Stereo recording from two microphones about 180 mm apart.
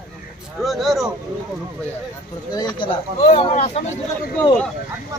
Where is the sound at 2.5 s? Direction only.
25° left (ahead or behind).